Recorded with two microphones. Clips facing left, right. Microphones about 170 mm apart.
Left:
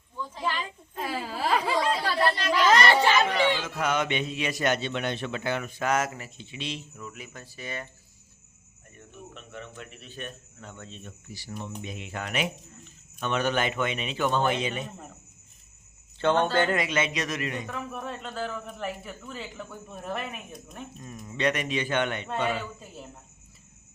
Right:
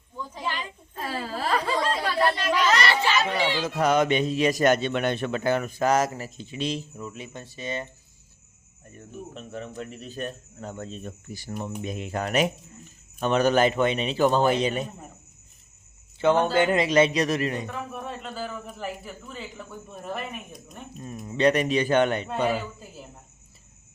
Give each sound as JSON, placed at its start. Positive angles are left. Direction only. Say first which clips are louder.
{"t": 0.9, "sound": "speech", "louder": "right 1 dB", "side_deg": 15}
{"t": 2.8, "sound": "a child's voice", "louder": "left 2 dB", "side_deg": 50}
{"t": 3.6, "sound": "a man's voice", "louder": "right 6 dB", "side_deg": -35}
{"t": 6.9, "sound": "speech", "louder": "right 5 dB", "side_deg": -30}
{"t": 9.0, "sound": "a man's voice", "louder": "right 6 dB", "side_deg": -35}
{"t": 16.1, "sound": "speech", "louder": "right 3 dB", "side_deg": -10}
{"t": 16.7, "sound": "a man's voice", "louder": "right 7 dB", "side_deg": -30}
{"t": 17.7, "sound": "a man's voice", "louder": "right 1 dB", "side_deg": 0}
{"t": 21.0, "sound": "a man's voice", "louder": "right 6 dB", "side_deg": -30}